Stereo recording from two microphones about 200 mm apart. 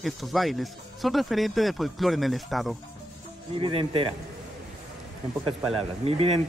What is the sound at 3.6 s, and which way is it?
Speech, 25° right (ahead or behind).